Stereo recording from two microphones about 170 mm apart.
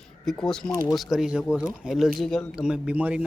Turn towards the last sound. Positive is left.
turn(degrees=-10)  # may be behind; listen again after turning